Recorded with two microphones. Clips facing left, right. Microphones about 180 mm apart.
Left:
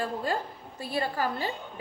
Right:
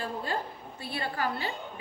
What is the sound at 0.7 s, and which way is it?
Speech, 40° left (ahead or behind).